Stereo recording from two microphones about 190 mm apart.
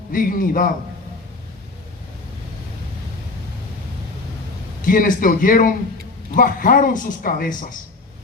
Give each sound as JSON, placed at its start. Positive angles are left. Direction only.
{"t": 0.1, "sound": "a man's voice", "side_deg": 45}
{"t": 4.8, "sound": "a man's voice", "side_deg": 45}